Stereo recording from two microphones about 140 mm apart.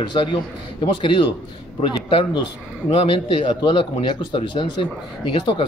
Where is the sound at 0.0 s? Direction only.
35° left (ahead or behind).